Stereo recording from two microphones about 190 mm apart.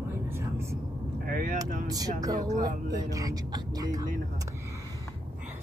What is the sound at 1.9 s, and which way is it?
Speech, 20° right (ahead or behind).